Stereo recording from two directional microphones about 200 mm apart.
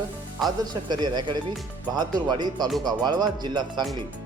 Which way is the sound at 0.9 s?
20° right (ahead or behind).